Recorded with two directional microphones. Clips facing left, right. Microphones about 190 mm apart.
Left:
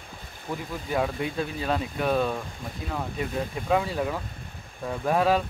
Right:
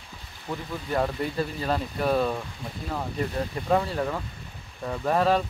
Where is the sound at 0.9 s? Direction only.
Centre (ahead or behind).